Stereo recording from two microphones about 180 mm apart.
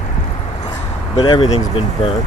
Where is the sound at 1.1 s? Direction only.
30° left (ahead or behind).